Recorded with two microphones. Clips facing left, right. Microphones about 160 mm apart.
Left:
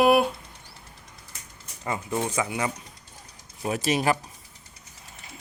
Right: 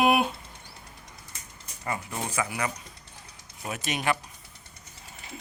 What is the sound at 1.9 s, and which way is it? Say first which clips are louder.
Speech: left 5 dB; 20° left (ahead or behind).